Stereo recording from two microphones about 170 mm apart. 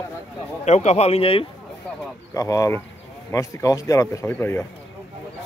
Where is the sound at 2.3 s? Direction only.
20° left (ahead or behind).